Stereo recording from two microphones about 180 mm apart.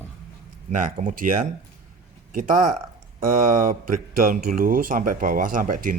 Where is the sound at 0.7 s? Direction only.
45° right (ahead or behind).